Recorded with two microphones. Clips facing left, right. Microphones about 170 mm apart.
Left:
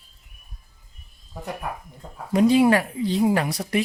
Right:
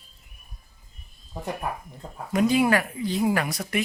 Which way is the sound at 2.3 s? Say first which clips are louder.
Left 4 dB; 30° left (ahead or behind).